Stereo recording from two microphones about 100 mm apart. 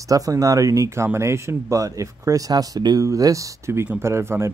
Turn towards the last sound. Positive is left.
turn(degrees=-25)  # may be behind; listen again after turning